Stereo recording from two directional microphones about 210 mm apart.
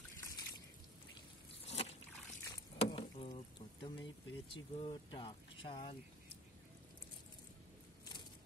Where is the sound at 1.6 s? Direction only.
30° left (ahead or behind).